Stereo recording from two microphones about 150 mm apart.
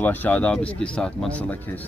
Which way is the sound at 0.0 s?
10° left (ahead or behind).